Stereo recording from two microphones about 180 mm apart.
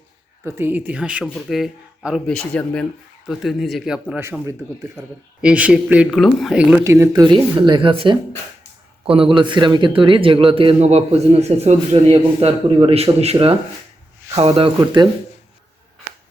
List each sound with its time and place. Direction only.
0.4 s speech: 15° right (ahead or behind)
4.1 s speech: 15° right (ahead or behind)
6.8 s a man's voice: 15° right (ahead or behind)